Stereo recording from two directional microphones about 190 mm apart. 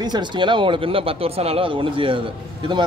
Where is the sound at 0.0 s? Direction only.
25° right (ahead or behind).